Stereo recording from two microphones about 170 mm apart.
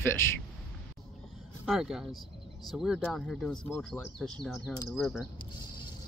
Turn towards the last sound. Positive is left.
turn(degrees=0)  # may be behind; listen again after turning